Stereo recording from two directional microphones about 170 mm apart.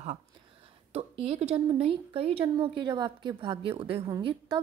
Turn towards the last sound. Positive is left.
turn(degrees=-30)  # may be behind; listen again after turning